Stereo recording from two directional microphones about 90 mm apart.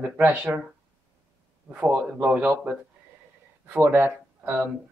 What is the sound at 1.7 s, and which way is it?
Speech, 15° right (ahead or behind).